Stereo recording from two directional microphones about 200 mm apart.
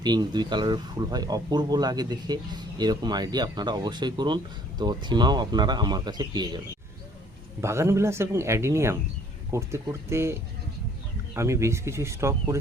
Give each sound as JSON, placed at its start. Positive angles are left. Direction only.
{"t": 0.0, "sound": "speech", "side_deg": -20}
{"t": 7.6, "sound": "speech", "side_deg": -15}
{"t": 11.3, "sound": "speech", "side_deg": -15}